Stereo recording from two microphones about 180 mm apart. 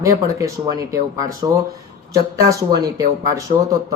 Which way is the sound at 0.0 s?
20° right (ahead or behind).